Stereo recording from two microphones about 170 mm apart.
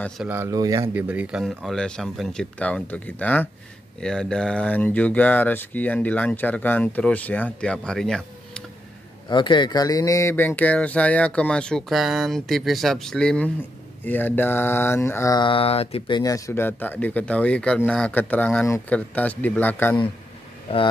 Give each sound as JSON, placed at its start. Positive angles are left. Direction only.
{"t": 0.3, "sound": "speech", "side_deg": -15}
{"t": 0.9, "sound": "speech", "side_deg": -10}
{"t": 9.3, "sound": "speech", "side_deg": 25}
{"t": 15.4, "sound": "a sound", "side_deg": 35}
{"t": 16.2, "sound": "speech", "side_deg": 20}